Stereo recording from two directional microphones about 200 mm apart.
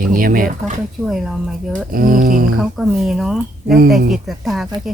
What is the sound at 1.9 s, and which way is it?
Speech, 45° right (ahead or behind).